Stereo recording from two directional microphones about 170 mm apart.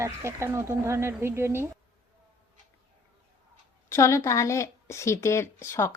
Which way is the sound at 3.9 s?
15° left (ahead or behind).